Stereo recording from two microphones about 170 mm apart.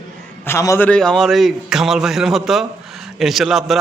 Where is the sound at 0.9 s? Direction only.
5° left (ahead or behind).